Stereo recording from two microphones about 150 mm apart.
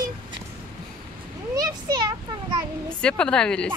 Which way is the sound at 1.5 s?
25° right (ahead or behind).